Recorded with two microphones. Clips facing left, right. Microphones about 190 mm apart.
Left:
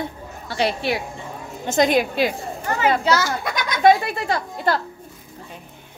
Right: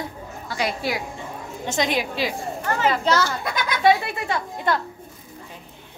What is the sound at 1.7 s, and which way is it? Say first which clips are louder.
Speech: left 6 dB; 50° left (ahead or behind).